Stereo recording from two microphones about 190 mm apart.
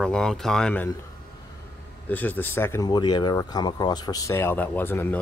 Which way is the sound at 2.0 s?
10° left (ahead or behind).